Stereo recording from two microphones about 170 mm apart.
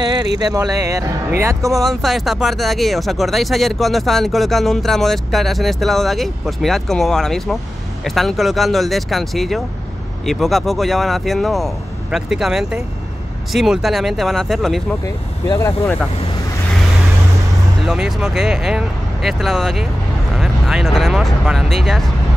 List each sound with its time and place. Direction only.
0.0 s speech: 25° right (ahead or behind)
1.7 s speech: centre (ahead or behind)
15.0 s speech: 20° left (ahead or behind)
17.8 s speech: centre (ahead or behind)